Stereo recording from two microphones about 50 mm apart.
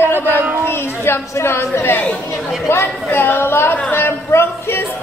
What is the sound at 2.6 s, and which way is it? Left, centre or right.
Speech, left.